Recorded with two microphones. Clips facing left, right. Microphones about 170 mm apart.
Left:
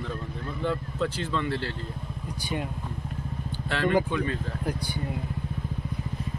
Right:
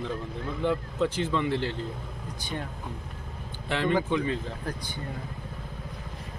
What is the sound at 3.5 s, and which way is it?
Vehicle, 15° right (ahead or behind).